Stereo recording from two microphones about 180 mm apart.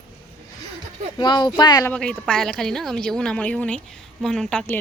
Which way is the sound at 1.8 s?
5° left (ahead or behind).